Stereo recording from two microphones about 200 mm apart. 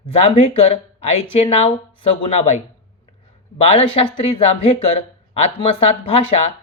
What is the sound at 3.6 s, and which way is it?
Speech, 30° left (ahead or behind).